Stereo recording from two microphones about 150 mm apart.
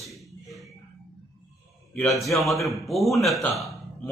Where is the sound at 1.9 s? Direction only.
Centre (ahead or behind).